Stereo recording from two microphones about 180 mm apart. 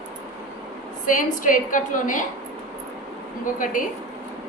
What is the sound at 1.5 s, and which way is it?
Speech, 45° left (ahead or behind).